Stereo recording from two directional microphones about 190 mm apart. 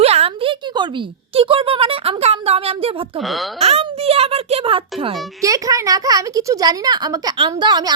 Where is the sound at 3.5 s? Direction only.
35° right (ahead or behind).